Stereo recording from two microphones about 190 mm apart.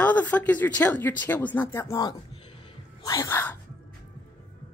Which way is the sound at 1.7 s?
15° left (ahead or behind).